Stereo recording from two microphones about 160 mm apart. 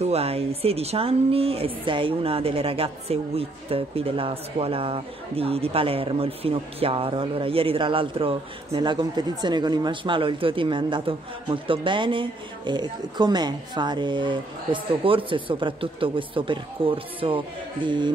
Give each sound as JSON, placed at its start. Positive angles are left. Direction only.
{"t": 0.0, "sound": "speech", "side_deg": -40}